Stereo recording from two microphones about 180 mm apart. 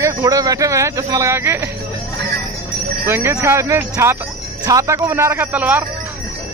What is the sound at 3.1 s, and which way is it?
Speech, 15° right (ahead or behind).